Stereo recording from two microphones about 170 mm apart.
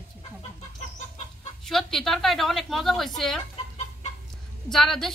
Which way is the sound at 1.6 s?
Centre (ahead or behind).